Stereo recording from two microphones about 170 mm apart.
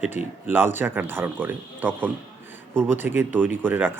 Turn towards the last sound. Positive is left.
turn(degrees=-10)  # may be behind; listen again after turning